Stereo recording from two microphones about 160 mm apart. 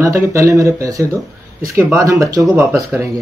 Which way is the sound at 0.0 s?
20° right (ahead or behind).